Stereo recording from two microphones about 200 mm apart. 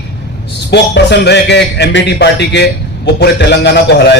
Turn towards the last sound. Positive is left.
turn(degrees=60)  # may be behind; listen again after turning